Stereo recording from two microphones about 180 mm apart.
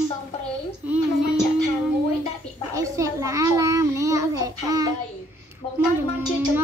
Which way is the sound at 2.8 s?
20° right (ahead or behind).